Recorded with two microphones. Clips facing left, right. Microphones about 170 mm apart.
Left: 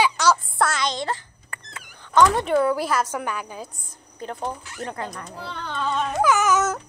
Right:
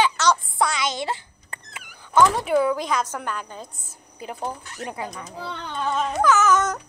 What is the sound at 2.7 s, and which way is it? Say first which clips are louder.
Speech: left 1 dB; 5° left (ahead or behind).